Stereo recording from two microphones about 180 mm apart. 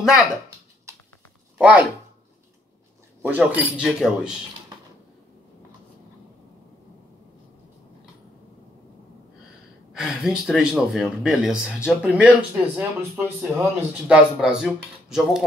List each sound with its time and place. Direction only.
0.0 s speech: 5° right (ahead or behind)
0.9 s patter: 15° right (ahead or behind)
1.6 s speech: 10° right (ahead or behind)
3.2 s speech: 10° right (ahead or behind)
9.9 s a man's voice: 5° right (ahead or behind)